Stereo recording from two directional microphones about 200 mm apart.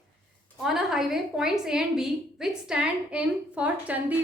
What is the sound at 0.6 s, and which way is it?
A woman's voice, centre (ahead or behind).